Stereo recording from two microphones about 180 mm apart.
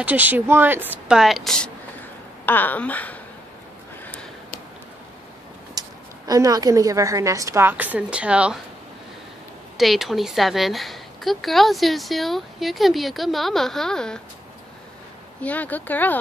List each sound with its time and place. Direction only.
0.0 s a woman's voice: 10° right (ahead or behind); by 3.2 s 10° left (ahead or behind)
4.0 s a sound: 5° left (ahead or behind)
5.8 s a woman's voice: 20° right (ahead or behind)
9.8 s a woman's voice: centre (ahead or behind)
15.4 s speech: 10° left (ahead or behind)